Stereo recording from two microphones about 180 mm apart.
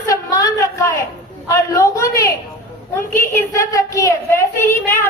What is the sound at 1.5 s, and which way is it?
A woman's voice, 15° left (ahead or behind).